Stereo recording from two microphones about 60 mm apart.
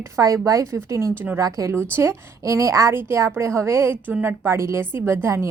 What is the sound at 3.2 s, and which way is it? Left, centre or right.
Speech, right.